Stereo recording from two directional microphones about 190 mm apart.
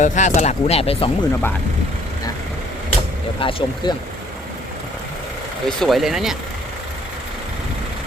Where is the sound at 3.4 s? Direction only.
30° left (ahead or behind).